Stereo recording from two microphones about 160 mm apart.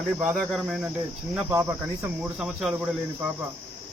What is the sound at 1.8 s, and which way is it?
Cricket, 5° right (ahead or behind).